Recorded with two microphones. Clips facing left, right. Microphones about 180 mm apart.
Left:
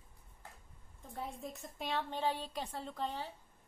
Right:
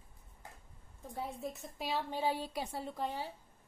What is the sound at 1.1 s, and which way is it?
A woman's voice, centre (ahead or behind).